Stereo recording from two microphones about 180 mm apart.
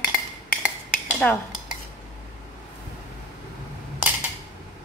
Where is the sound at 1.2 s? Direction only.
5° left (ahead or behind).